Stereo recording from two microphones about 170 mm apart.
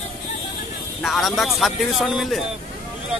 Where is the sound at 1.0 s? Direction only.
Centre (ahead or behind).